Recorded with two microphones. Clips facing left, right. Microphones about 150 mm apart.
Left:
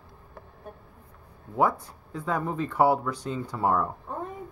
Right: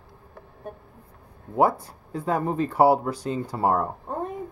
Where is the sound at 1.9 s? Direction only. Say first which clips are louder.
Right 4 dB; 35° right (ahead or behind).